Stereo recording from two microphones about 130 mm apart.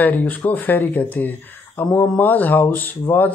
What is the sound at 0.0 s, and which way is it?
Speech, 15° left (ahead or behind).